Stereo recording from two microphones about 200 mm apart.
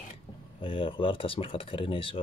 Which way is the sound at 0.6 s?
25° left (ahead or behind).